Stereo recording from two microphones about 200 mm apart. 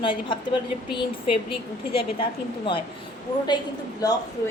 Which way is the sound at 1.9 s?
25° left (ahead or behind).